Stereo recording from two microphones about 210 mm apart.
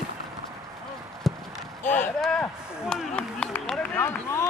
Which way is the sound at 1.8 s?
10° left (ahead or behind).